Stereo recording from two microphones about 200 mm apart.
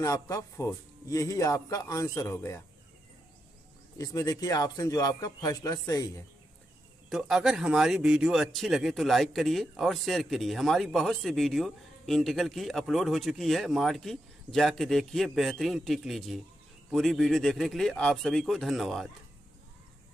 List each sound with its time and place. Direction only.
0.0 s speech: 15° left (ahead or behind)
4.0 s speech: 15° left (ahead or behind)
7.1 s speech: 5° right (ahead or behind)